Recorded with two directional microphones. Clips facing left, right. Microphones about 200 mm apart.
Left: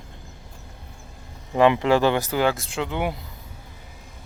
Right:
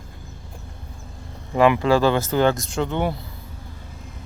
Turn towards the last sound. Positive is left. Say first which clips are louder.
# right 3 dB
turn(degrees=5)  # may be behind; listen again after turning